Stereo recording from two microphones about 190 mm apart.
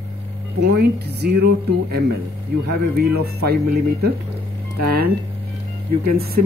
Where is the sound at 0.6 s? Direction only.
60° right (ahead or behind).